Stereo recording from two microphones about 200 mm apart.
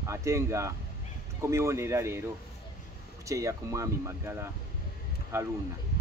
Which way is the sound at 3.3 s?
15° right (ahead or behind).